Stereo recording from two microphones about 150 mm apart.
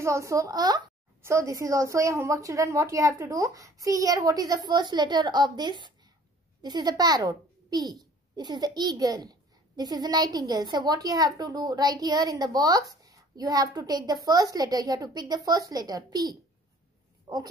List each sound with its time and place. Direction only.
0.0 s a child's voice: 20° right (ahead or behind)